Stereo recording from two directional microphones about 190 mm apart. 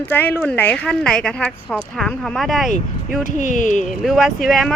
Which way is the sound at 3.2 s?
40° left (ahead or behind).